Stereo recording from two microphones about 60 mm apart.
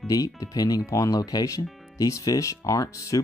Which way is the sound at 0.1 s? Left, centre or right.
Left.